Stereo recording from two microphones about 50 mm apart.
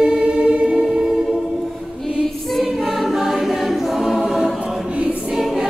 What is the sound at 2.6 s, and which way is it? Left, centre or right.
Choir, centre.